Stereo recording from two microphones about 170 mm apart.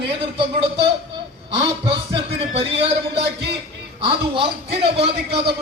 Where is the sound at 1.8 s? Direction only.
30° right (ahead or behind).